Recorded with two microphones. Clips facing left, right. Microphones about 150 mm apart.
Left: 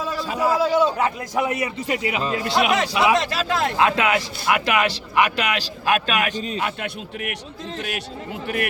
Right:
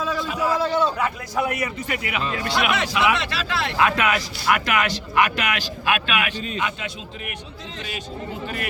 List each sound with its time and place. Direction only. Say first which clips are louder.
0.2 s a sound: left 1 dB; 35° left (ahead or behind)
0.4 s a man's voice: left 3 dB; 10° left (ahead or behind)
1.4 s a man's voice: left 1 dB; 20° left (ahead or behind); by 3.8 s 45° left (ahead or behind)
3.8 s speech: right 1 dB; 25° left (ahead or behind)
6.7 s a man's voice: left 3 dB; 55° left (ahead or behind)